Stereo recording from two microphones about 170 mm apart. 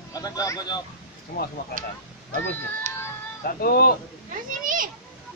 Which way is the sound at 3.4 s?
60° left (ahead or behind).